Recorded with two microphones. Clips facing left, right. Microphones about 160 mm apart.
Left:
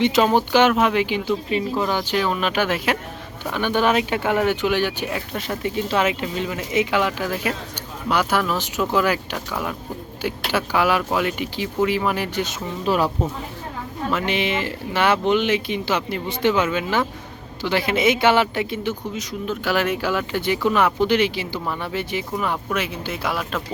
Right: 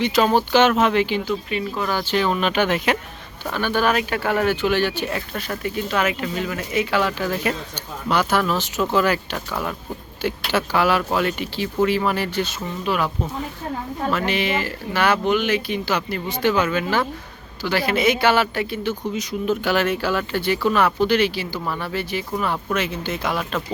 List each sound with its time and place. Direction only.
0.0 s speech: 20° left (ahead or behind)
1.2 s speech: 30° left (ahead or behind); by 3.0 s 5° left (ahead or behind)
3.4 s speech: 15° left (ahead or behind)
5.4 s speech: 25° left (ahead or behind)
12.8 s speech: 35° left (ahead or behind)
14.1 s speech: 20° left (ahead or behind)
19.1 s speech: centre (ahead or behind)